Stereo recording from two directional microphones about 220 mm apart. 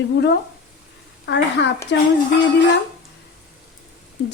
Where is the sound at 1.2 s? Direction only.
55° left (ahead or behind).